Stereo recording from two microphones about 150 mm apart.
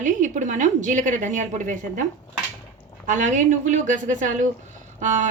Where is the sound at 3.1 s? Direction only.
55° right (ahead or behind).